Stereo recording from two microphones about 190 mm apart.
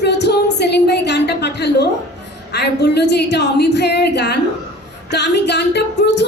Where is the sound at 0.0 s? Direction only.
65° left (ahead or behind).